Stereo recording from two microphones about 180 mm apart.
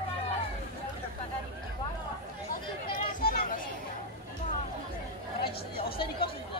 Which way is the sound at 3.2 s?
55° left (ahead or behind).